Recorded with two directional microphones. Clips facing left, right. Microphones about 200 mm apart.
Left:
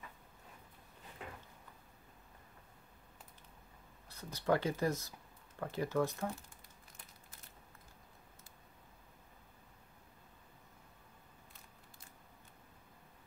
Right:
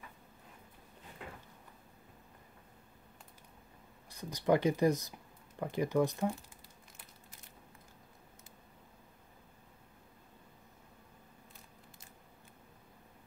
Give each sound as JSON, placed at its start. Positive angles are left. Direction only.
{"t": 4.1, "sound": "speech", "side_deg": -15}